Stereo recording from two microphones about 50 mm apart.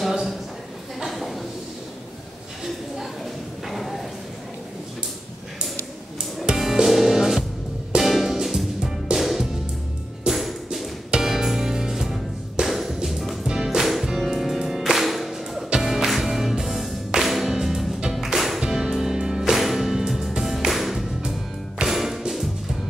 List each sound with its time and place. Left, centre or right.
0.0 s a sound: centre
3.6 s a sound: centre
6.4 s music: centre
13.5 s music: centre
13.7 s music: centre
19.5 s music: centre